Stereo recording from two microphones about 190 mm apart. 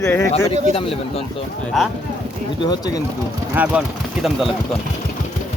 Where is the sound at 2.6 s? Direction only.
20° left (ahead or behind).